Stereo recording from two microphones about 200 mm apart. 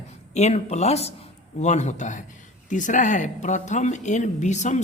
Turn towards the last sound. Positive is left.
turn(degrees=35)  # may be behind; listen again after turning